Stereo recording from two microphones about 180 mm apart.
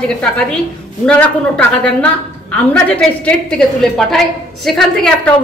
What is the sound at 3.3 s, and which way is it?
A woman's voice, 5° left (ahead or behind).